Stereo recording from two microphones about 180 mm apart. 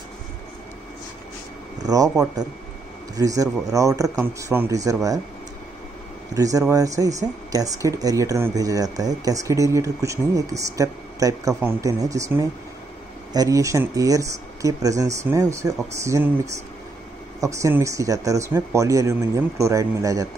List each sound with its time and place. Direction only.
1.9 s speech: 20° right (ahead or behind)
6.3 s speech: 20° right (ahead or behind)
17.4 s speech: 15° right (ahead or behind)